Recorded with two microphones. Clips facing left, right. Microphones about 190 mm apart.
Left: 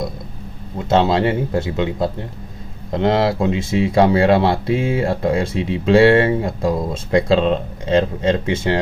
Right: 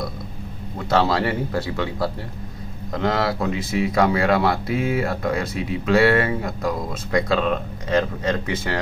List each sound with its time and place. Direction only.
0.8 s speech: 25° left (ahead or behind)